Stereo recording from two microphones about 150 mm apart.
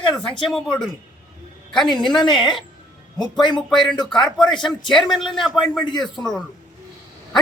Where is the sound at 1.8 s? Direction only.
30° left (ahead or behind).